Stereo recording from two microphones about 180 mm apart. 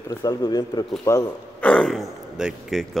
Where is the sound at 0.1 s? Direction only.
20° left (ahead or behind).